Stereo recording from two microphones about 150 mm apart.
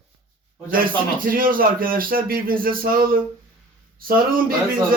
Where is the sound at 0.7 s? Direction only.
70° right (ahead or behind).